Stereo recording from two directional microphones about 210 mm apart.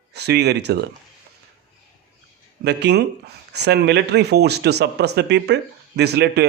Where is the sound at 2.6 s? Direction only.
50° right (ahead or behind).